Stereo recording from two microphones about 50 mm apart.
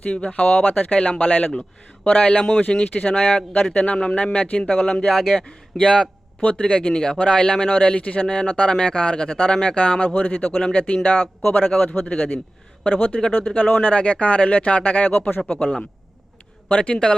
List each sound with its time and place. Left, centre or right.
0.1 s speech: left
0.9 s speech: centre
1.2 s speech: left
5.0 s speech: centre
5.5 s speech: centre
7.7 s speech: left